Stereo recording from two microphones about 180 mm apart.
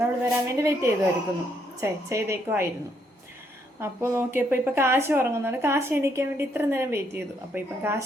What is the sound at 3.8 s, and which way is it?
A woman's voice, 15° right (ahead or behind).